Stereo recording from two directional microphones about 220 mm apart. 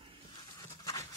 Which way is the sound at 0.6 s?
20° left (ahead or behind).